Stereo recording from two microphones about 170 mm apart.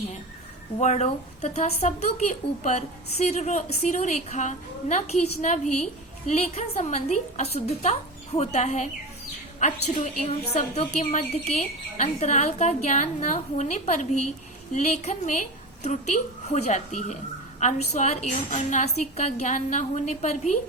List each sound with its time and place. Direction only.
0.8 s a woman's voice: 40° left (ahead or behind)